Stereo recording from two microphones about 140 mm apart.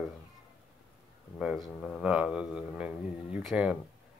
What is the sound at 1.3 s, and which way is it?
Speech, centre (ahead or behind).